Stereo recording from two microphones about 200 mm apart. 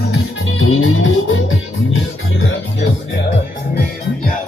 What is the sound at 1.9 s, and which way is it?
Music, 75° left (ahead or behind).